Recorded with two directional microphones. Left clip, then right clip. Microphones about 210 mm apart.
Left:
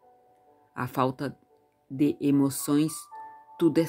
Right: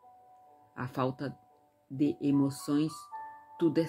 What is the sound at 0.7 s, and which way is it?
Speech, 35° left (ahead or behind).